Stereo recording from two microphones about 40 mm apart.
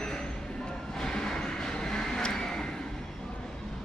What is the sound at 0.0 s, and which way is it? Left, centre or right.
Train, centre.